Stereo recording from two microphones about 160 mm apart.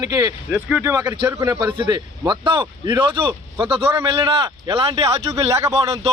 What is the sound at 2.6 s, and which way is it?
Speech, 20° right (ahead or behind).